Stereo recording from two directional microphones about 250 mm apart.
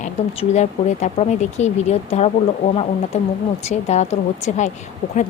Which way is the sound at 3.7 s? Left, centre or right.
Left.